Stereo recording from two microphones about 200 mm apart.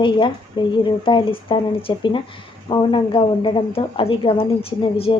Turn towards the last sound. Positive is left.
turn(degrees=30)  # may be behind; listen again after turning